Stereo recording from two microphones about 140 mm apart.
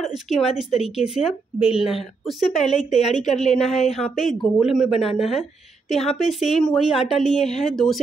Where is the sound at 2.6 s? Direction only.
55° left (ahead or behind).